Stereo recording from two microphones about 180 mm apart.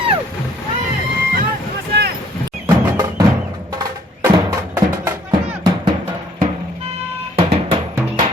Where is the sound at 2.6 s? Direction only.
20° right (ahead or behind).